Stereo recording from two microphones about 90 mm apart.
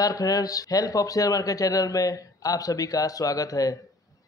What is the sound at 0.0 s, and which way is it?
A man's voice, 40° left (ahead or behind).